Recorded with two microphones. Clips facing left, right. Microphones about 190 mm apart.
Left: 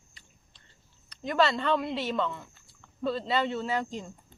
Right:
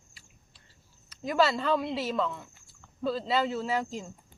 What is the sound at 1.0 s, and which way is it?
Speech, 5° right (ahead or behind).